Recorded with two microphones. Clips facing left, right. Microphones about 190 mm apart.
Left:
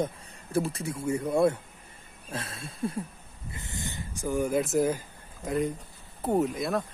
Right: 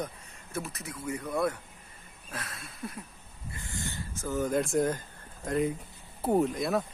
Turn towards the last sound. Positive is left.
turn(degrees=0)  # may be behind; listen again after turning